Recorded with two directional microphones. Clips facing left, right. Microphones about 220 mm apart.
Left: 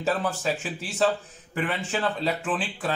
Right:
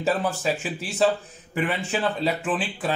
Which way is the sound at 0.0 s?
10° right (ahead or behind).